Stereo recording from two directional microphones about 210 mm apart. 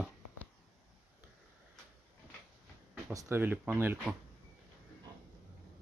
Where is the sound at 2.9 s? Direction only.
15° right (ahead or behind).